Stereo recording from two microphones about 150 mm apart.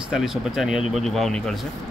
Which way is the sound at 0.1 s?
Centre (ahead or behind).